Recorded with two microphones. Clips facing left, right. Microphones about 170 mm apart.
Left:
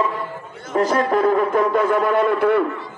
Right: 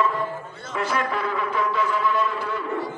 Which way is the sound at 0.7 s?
40° left (ahead or behind).